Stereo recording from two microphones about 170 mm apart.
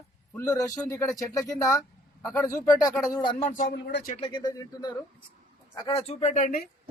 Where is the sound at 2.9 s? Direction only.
5° right (ahead or behind).